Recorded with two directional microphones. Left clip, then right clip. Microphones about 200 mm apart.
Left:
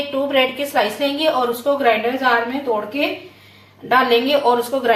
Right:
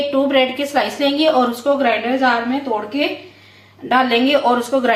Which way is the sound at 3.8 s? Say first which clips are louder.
Even; 25° right (ahead or behind).